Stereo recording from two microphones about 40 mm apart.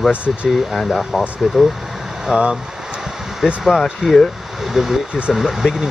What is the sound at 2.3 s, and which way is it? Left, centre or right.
Speech, right.